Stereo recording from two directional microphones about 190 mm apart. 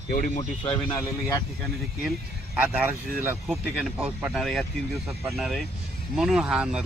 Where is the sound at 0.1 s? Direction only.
45° left (ahead or behind).